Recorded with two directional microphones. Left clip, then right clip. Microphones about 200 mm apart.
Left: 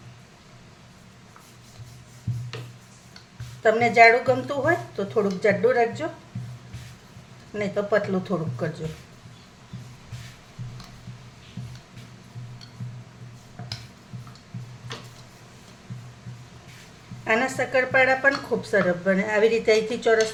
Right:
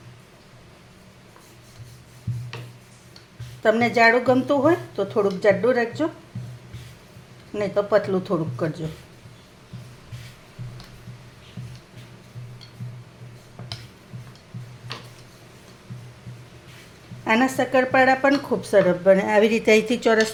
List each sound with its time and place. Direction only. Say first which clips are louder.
3.6 s speech: left 2 dB; 30° right (ahead or behind)
7.6 s speech: right 3 dB; 30° right (ahead or behind)
17.2 s speech: right 2 dB; 35° right (ahead or behind)